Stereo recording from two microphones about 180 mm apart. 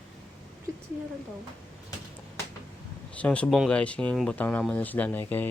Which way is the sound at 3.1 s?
5° left (ahead or behind).